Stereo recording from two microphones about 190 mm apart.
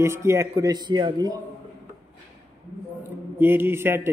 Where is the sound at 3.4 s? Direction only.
10° right (ahead or behind).